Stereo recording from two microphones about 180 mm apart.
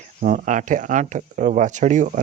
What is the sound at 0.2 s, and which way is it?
Speech, 45° right (ahead or behind).